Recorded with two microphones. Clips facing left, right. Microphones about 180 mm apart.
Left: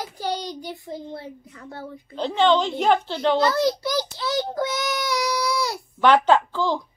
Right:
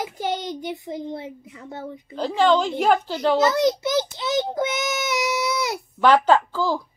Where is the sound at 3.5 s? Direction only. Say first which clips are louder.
Right 2 dB; 20° right (ahead or behind).